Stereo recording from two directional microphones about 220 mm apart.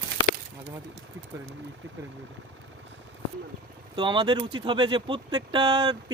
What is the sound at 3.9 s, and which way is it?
Speech, 20° right (ahead or behind).